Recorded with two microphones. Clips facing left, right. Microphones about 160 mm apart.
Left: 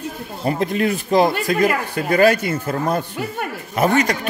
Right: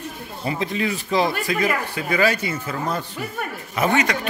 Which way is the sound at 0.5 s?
50° left (ahead or behind).